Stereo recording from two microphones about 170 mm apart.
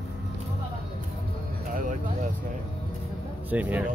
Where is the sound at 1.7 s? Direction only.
55° right (ahead or behind).